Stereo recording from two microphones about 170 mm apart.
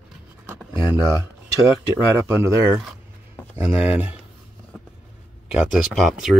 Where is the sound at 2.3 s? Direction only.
15° right (ahead or behind).